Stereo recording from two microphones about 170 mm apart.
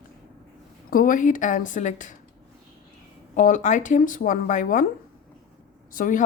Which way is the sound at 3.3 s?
50° left (ahead or behind).